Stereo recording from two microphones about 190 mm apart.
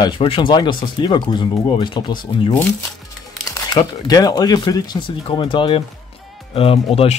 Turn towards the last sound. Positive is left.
turn(degrees=30)  # may be behind; listen again after turning